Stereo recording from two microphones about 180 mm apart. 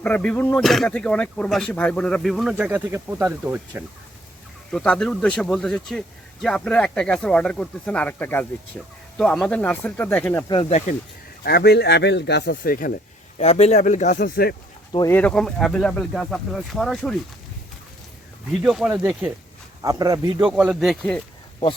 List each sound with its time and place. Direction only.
0.0 s speech: 10° left (ahead or behind); by 3.8 s 10° right (ahead or behind)
4.7 s speech: 5° left (ahead or behind)
10.5 s speech: 25° left (ahead or behind)
11.4 s speech: 60° left (ahead or behind)
13.4 s speech: 35° left (ahead or behind)
14.3 s speech: 55° left (ahead or behind)
14.9 s speech: 15° left (ahead or behind)
18.6 s speech: 5° right (ahead or behind)
19.8 s speech: 20° right (ahead or behind)
20.4 s speech: 5° right (ahead or behind)